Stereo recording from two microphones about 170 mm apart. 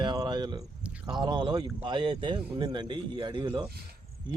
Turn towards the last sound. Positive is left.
turn(degrees=-30)  # may be behind; listen again after turning